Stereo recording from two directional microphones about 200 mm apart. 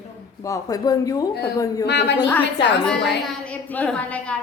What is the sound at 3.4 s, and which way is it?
Speech, 5° left (ahead or behind).